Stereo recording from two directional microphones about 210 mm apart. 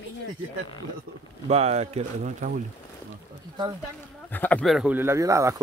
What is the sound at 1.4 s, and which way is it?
Speech, 30° right (ahead or behind).